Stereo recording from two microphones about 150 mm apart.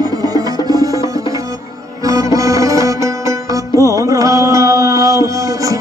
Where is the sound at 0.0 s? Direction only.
25° right (ahead or behind).